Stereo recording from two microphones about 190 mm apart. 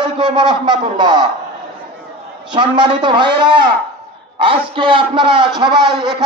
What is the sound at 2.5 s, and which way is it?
A man's voice, 25° right (ahead or behind).